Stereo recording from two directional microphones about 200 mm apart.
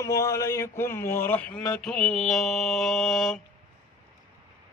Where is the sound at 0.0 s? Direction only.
15° left (ahead or behind).